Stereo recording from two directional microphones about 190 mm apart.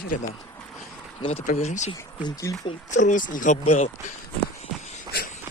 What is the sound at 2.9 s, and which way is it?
Speech, 40° left (ahead or behind).